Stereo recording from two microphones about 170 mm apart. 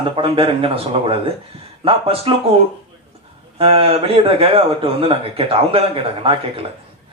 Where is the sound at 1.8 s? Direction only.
35° right (ahead or behind).